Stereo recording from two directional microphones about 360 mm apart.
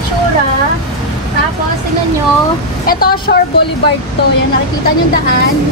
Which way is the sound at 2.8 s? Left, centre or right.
Left.